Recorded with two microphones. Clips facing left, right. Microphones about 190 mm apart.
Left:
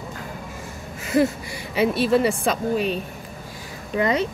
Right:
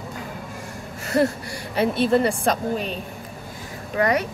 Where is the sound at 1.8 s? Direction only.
5° left (ahead or behind).